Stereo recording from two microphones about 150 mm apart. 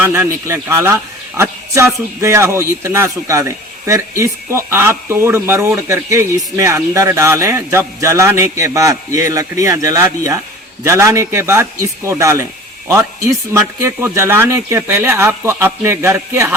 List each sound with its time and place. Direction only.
0.0 s speech: 20° right (ahead or behind)
13.5 s speech: 20° right (ahead or behind)